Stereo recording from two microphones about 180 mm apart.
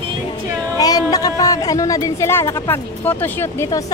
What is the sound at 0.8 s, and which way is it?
Speech, 20° left (ahead or behind).